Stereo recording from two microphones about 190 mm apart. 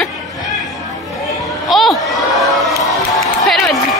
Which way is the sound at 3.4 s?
Centre (ahead or behind).